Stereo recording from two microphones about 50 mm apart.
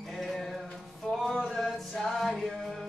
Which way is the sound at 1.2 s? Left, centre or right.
Centre.